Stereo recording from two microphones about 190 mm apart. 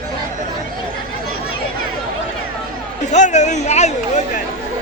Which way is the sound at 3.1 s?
40° left (ahead or behind).